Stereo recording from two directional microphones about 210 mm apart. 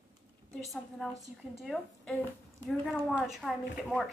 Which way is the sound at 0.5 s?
Centre (ahead or behind).